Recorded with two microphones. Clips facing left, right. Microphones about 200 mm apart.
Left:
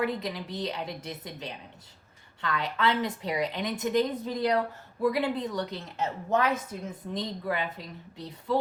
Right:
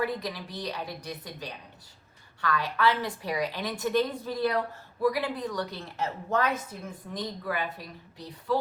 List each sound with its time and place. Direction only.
0.0 s a woman's voice: 20° left (ahead or behind)